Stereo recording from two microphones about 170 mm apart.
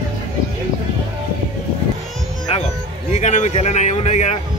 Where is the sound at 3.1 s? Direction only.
45° left (ahead or behind).